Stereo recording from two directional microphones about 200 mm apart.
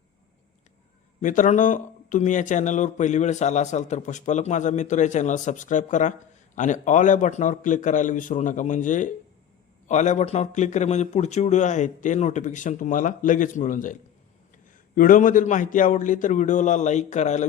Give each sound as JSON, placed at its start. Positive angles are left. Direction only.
{"t": 1.2, "sound": "speech", "side_deg": 40}
{"t": 14.9, "sound": "speech", "side_deg": 45}